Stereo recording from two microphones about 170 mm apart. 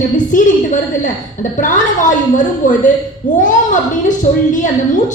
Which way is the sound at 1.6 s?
50° left (ahead or behind).